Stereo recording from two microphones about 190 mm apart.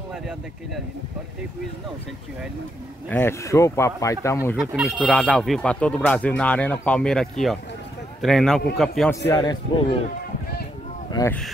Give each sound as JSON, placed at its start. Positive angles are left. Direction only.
{"t": 3.1, "sound": "speech", "side_deg": 10}
{"t": 4.6, "sound": "speech", "side_deg": 0}
{"t": 9.3, "sound": "a man's voice", "side_deg": 20}
{"t": 11.1, "sound": "speech", "side_deg": 20}